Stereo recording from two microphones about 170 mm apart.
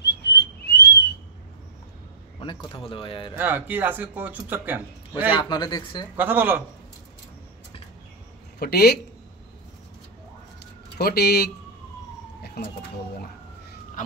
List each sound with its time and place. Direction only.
0.0 s whistling: 90° left
2.4 s speech: 30° left (ahead or behind)
3.3 s speech: 10° right (ahead or behind)
5.3 s speech: 25° left (ahead or behind)
6.1 s speech: 10° right (ahead or behind)
8.5 s speech: 70° left (ahead or behind)
11.0 s speech: 70° left (ahead or behind)
12.6 s speech: 75° left (ahead or behind)
14.0 s a sound: 50° left (ahead or behind)